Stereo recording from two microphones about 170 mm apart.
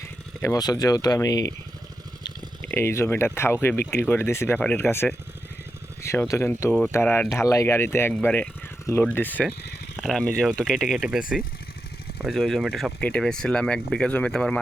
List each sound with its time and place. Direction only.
0.0 s speech: 20° left (ahead or behind)
2.6 s speech: 15° left (ahead or behind)